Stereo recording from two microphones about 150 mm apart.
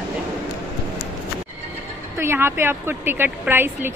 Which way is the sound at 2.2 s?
15° right (ahead or behind).